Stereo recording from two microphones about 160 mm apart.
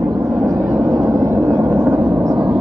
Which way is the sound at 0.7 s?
20° right (ahead or behind).